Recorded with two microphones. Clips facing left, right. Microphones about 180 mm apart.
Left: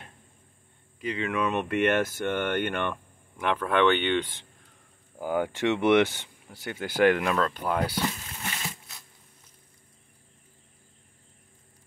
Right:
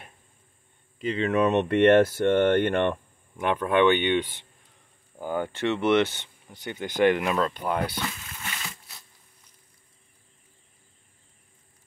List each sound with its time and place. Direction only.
1.0 s speech: 30° right (ahead or behind)
3.3 s speech: 15° right (ahead or behind)
5.2 s speech: 10° left (ahead or behind)
7.2 s speech: 5° right (ahead or behind)
7.5 s speech: 5° left (ahead or behind)